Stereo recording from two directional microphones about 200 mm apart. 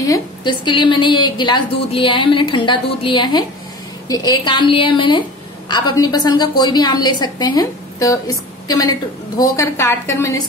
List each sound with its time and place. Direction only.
0.0 s a woman's voice: 20° left (ahead or behind)